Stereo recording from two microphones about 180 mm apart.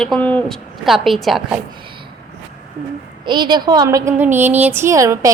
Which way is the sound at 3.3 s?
25° right (ahead or behind).